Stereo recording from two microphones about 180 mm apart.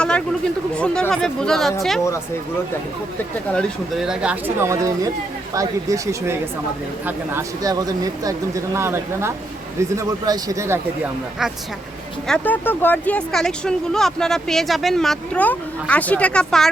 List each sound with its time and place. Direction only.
0.0 s speech: 5° left (ahead or behind)
3.5 s speech: centre (ahead or behind); by 11.1 s 15° right (ahead or behind)
12.3 s speech: 10° left (ahead or behind)